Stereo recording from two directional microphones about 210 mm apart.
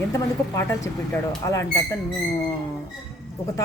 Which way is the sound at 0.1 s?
15° left (ahead or behind).